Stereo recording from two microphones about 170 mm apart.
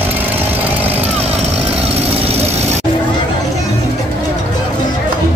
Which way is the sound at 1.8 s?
35° right (ahead or behind).